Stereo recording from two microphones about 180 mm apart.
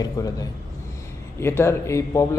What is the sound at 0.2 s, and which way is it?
Speech, 20° left (ahead or behind).